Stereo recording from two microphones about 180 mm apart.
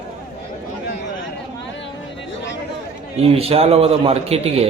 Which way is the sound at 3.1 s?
35° right (ahead or behind).